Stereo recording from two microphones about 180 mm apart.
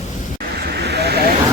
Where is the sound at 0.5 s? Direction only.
65° right (ahead or behind).